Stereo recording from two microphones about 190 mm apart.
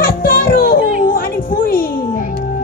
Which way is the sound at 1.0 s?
50° left (ahead or behind).